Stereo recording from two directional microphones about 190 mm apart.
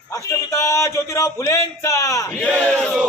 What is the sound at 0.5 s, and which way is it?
A man's voice, 15° left (ahead or behind).